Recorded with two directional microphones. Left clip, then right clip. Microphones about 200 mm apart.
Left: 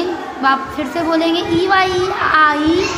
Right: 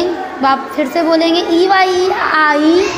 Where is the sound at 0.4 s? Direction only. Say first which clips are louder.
Right 2 dB; 15° right (ahead or behind).